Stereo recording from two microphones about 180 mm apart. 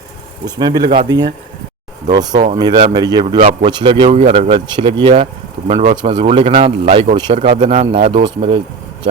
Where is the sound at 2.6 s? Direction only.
20° right (ahead or behind).